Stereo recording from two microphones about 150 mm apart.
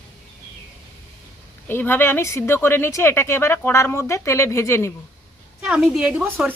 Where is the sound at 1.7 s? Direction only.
15° left (ahead or behind).